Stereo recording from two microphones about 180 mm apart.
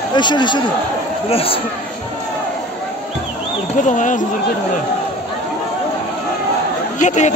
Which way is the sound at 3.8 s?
45° left (ahead or behind).